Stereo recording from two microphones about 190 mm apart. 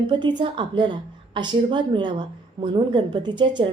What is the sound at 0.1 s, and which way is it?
A woman's voice, 25° right (ahead or behind).